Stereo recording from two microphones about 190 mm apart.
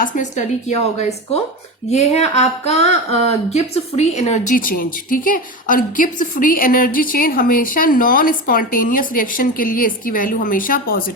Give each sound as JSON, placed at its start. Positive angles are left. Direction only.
{"t": 0.0, "sound": "a woman's voice", "side_deg": 40}